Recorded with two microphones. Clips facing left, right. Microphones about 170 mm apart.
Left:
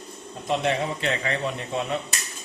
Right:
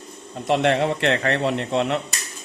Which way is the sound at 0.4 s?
70° right (ahead or behind).